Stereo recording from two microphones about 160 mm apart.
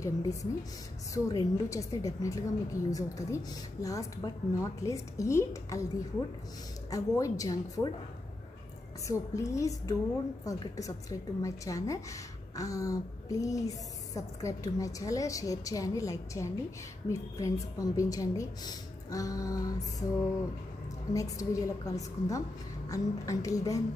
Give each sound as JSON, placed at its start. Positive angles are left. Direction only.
{"t": 0.0, "sound": "a woman's voice", "side_deg": 20}
{"t": 6.9, "sound": "a woman's voice", "side_deg": 20}
{"t": 9.0, "sound": "a woman's voice", "side_deg": 20}
{"t": 21.1, "sound": "a woman's voice", "side_deg": 20}